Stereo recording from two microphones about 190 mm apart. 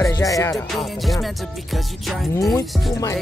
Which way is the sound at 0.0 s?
15° left (ahead or behind).